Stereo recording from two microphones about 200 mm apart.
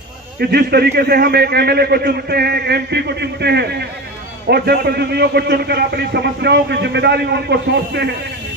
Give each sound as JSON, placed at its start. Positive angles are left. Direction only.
{"t": 0.4, "sound": "a man's voice", "side_deg": -55}